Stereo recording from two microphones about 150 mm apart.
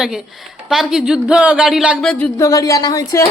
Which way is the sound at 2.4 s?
20° left (ahead or behind).